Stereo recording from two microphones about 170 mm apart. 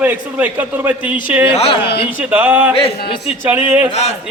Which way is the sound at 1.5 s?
35° left (ahead or behind).